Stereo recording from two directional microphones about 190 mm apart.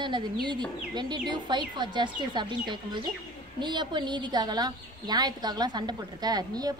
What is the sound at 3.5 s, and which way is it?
A woman's voice, 25° right (ahead or behind).